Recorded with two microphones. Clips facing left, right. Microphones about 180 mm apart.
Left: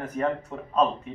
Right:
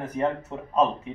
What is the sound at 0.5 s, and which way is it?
Speech, 20° right (ahead or behind).